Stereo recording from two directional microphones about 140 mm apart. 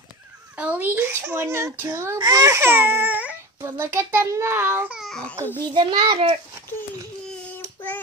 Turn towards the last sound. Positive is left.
turn(degrees=15)  # may be behind; listen again after turning